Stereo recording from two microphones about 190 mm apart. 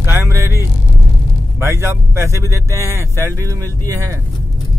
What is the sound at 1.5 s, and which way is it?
Speech, 15° right (ahead or behind).